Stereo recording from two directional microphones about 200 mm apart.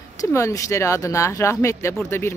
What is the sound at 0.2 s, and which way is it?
Speech, 15° left (ahead or behind).